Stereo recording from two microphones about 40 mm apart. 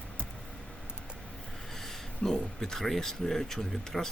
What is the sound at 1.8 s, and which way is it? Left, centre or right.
Speech, centre.